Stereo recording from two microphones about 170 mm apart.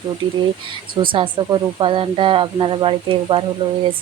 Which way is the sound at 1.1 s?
30° right (ahead or behind).